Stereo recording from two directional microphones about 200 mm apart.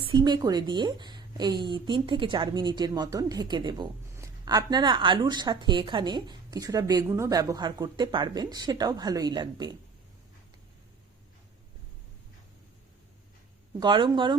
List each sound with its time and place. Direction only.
0.0 s a woman's voice: 25° right (ahead or behind)
13.7 s a woman's voice: 20° right (ahead or behind)